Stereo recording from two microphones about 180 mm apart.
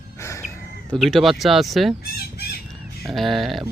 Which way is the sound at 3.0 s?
Centre (ahead or behind).